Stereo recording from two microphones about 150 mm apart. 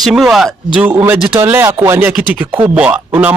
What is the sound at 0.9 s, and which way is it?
Speech, 15° right (ahead or behind).